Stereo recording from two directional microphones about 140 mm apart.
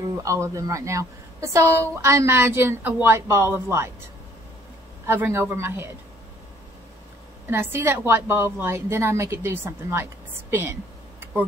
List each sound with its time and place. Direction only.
0.2 s speech: 25° right (ahead or behind)
5.0 s a woman's voice: 15° right (ahead or behind)
7.4 s a woman's voice: 15° right (ahead or behind)
10.5 s a sound: 15° right (ahead or behind)